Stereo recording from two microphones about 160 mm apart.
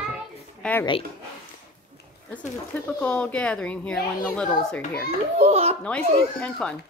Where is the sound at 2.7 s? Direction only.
10° left (ahead or behind).